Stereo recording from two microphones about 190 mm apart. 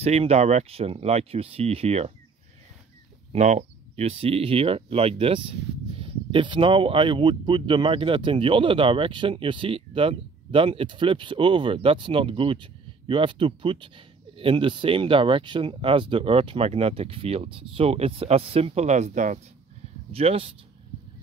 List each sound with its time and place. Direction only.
0.0 s speech: 35° right (ahead or behind)
3.3 s speech: 35° right (ahead or behind)